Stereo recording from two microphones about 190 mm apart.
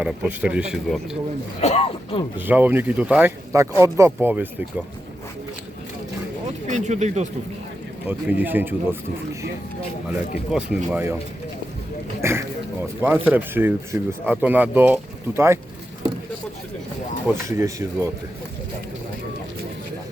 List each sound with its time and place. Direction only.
0.0 s a man's voice: 5° right (ahead or behind)
1.6 s speech: 30° left (ahead or behind)
2.5 s speech: 10° right (ahead or behind)
6.7 s speech: 40° right (ahead or behind)
8.0 s speech: 10° right (ahead or behind)
10.5 s speech: 5° right (ahead or behind)
12.2 s speech: 15° right (ahead or behind)
17.2 s speech: 15° right (ahead or behind)